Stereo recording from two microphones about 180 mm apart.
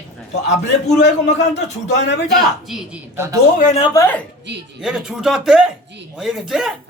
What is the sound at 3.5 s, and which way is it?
Speech, 45° left (ahead or behind).